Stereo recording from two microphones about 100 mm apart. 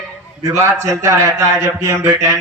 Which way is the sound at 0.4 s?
30° right (ahead or behind).